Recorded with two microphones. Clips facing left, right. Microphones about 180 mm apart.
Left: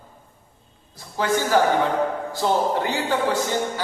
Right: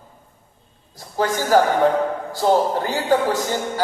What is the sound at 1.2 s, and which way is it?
A man's voice, 40° right (ahead or behind).